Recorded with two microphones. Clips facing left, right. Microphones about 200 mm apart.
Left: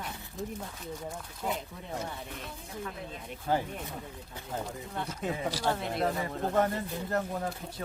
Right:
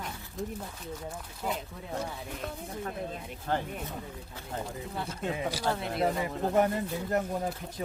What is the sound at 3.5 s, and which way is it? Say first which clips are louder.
Speech: left 2 dB; 10° left (ahead or behind).